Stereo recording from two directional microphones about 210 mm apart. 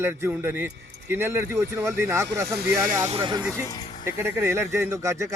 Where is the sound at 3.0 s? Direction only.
25° right (ahead or behind).